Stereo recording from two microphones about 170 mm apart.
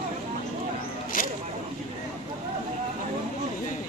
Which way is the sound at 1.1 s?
55° left (ahead or behind).